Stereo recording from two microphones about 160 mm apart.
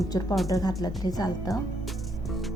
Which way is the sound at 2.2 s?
Centre (ahead or behind).